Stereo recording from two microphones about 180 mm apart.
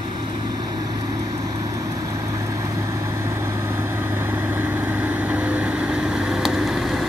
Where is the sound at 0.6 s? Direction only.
25° right (ahead or behind).